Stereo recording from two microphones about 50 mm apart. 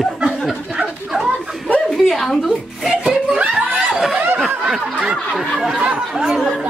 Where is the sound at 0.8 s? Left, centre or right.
Centre.